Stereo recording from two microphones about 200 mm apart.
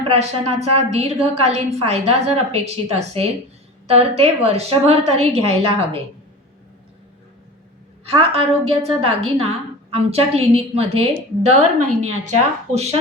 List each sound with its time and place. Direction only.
0.0 s a woman's voice: 30° right (ahead or behind)
8.0 s a woman's voice: 30° right (ahead or behind)